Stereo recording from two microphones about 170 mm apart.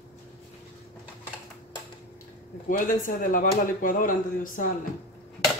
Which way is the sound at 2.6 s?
50° left (ahead or behind).